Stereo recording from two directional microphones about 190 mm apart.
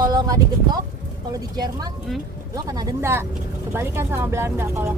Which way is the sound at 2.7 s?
15° right (ahead or behind).